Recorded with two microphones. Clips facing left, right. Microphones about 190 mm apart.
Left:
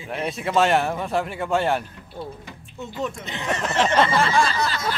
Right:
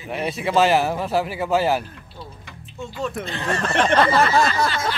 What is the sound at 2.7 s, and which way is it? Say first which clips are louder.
Speech: right 2 dB; 20° left (ahead or behind).